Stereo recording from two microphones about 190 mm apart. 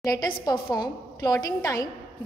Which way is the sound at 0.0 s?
20° left (ahead or behind).